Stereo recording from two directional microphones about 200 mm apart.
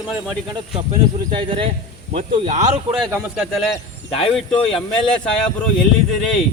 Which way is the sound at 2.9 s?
5° right (ahead or behind).